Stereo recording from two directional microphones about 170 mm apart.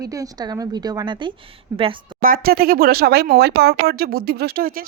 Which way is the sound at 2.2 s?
60° right (ahead or behind).